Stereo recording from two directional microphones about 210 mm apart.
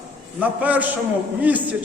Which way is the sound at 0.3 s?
5° right (ahead or behind).